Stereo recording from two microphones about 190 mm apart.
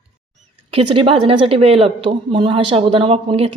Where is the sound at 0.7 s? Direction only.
30° right (ahead or behind).